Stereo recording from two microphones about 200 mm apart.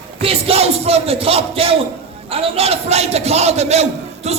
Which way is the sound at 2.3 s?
30° right (ahead or behind).